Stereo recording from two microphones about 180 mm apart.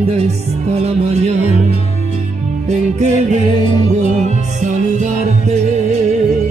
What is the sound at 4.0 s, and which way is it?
Music, 40° right (ahead or behind).